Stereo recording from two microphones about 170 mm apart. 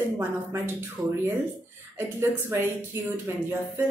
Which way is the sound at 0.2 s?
15° right (ahead or behind).